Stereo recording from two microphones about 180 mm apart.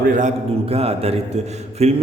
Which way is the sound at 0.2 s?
40° right (ahead or behind).